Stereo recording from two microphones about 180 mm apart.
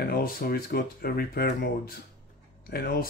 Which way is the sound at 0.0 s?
55° left (ahead or behind).